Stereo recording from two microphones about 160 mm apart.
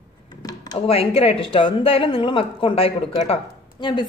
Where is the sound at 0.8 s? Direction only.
35° left (ahead or behind).